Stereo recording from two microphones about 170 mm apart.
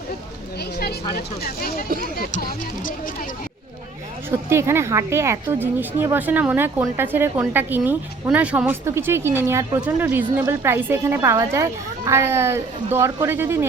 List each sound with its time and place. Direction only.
2.0 s speech: 60° left (ahead or behind)
4.3 s a woman's voice: 15° right (ahead or behind)